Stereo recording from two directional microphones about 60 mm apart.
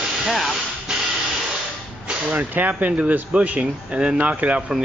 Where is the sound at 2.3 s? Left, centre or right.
Right.